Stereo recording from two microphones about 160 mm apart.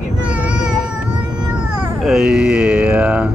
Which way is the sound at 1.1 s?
5° right (ahead or behind).